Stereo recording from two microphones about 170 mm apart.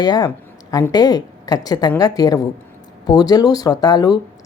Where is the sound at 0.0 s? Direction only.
25° left (ahead or behind).